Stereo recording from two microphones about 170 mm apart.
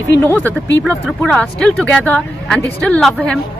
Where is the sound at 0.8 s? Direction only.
5° left (ahead or behind).